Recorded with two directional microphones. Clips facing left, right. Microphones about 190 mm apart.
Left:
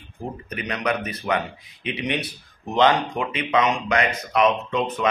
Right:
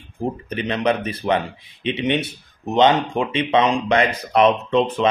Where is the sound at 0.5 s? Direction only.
30° right (ahead or behind).